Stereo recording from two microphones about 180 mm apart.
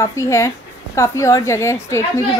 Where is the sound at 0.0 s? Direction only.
15° left (ahead or behind).